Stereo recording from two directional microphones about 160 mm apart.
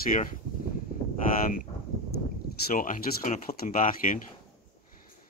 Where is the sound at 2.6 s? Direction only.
55° left (ahead or behind).